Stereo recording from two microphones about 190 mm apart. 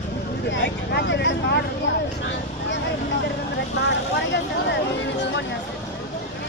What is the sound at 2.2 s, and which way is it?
Vehicle, 70° left (ahead or behind).